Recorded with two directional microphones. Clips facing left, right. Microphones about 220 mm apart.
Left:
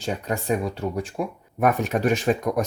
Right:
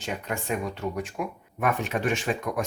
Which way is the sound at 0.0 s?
35° left (ahead or behind).